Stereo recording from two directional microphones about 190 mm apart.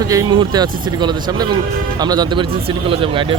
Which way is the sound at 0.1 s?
20° right (ahead or behind).